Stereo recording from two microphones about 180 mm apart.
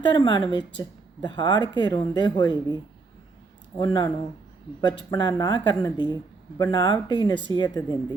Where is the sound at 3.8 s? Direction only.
25° left (ahead or behind).